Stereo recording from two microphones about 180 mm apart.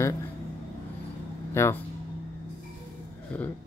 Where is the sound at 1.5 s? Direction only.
15° left (ahead or behind).